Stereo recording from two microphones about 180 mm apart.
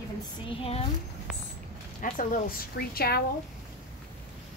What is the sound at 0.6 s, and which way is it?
Speech, 35° left (ahead or behind).